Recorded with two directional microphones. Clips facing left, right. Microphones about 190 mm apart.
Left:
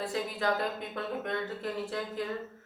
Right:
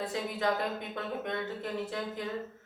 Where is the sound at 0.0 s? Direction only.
20° right (ahead or behind).